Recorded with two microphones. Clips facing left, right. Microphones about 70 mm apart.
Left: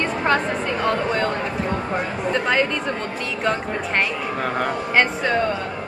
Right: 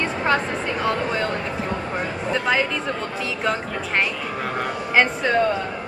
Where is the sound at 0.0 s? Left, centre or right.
Centre.